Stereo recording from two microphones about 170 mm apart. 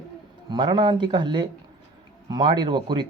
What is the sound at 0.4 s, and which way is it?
Speech, 25° right (ahead or behind).